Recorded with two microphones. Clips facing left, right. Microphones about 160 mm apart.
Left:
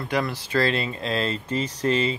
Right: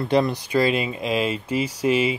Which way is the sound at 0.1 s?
20° right (ahead or behind).